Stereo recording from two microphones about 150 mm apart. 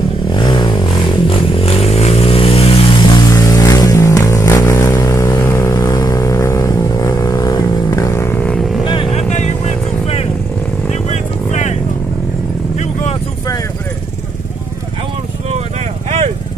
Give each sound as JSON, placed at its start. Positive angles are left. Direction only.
{"t": 0.3, "sound": "vehicle", "side_deg": 30}
{"t": 8.8, "sound": "vehicle", "side_deg": 35}
{"t": 9.3, "sound": "vehicle", "side_deg": 50}